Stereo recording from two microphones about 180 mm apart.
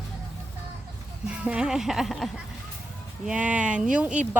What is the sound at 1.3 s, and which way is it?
Speech, 5° right (ahead or behind).